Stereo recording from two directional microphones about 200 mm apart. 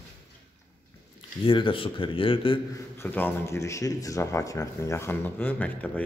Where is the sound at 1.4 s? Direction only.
25° left (ahead or behind).